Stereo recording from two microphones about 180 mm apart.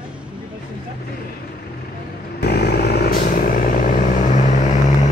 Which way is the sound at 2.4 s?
60° left (ahead or behind).